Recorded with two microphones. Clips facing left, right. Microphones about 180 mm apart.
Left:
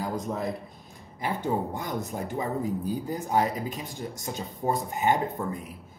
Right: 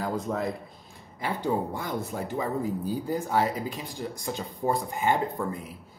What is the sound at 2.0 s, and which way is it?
Speech, 20° left (ahead or behind).